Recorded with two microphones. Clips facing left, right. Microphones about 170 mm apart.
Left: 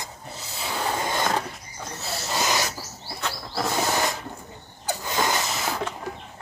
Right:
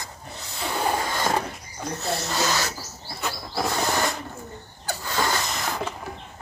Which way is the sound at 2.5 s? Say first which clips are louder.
Even; 15° left (ahead or behind).